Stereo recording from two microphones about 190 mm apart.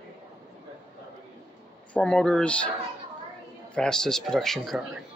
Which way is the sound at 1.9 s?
5° left (ahead or behind).